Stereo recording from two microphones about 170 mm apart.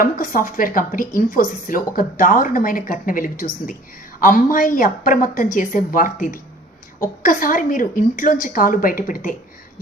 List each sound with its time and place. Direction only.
0.0 s a woman's voice: 55° left (ahead or behind)